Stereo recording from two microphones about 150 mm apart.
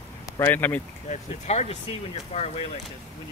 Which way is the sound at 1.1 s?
50° left (ahead or behind).